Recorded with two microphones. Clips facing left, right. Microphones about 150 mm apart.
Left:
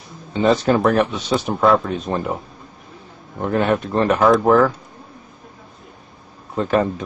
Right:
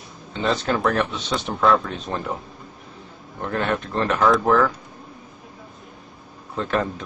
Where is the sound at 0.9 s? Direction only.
5° left (ahead or behind).